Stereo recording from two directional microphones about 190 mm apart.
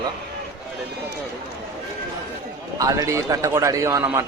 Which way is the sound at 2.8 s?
20° right (ahead or behind).